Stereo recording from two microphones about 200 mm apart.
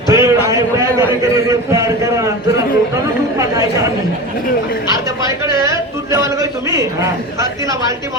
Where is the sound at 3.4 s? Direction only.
15° right (ahead or behind).